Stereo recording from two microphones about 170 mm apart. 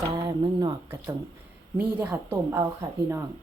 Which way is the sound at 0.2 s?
25° right (ahead or behind).